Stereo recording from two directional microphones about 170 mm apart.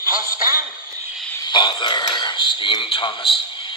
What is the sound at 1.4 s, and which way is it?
A man's voice, 25° left (ahead or behind).